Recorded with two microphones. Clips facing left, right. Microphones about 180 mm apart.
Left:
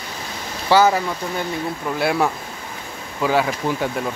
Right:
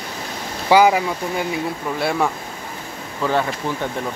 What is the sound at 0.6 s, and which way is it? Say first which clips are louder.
Speech: right 2 dB; 15° right (ahead or behind).